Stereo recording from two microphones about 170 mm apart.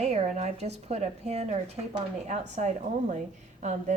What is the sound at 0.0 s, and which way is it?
A woman's voice, 40° right (ahead or behind).